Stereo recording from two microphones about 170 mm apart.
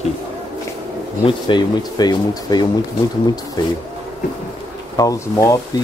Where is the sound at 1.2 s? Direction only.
25° left (ahead or behind).